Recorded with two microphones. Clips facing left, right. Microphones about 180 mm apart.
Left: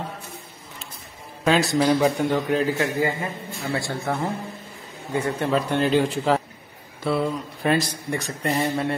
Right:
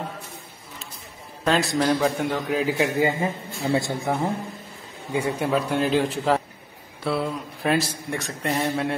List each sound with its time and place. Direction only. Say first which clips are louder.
1.4 s speech: left 2 dB; centre (ahead or behind)
2.8 s speech: right 2 dB; 25° right (ahead or behind); by 8.9 s centre (ahead or behind)